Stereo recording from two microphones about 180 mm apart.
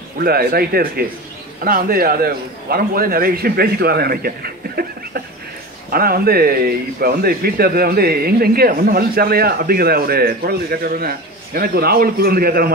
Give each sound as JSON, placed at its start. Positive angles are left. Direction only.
{"t": 0.2, "sound": "speech", "side_deg": -55}